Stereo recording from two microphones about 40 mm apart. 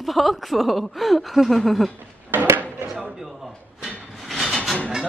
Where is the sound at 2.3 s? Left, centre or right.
Right.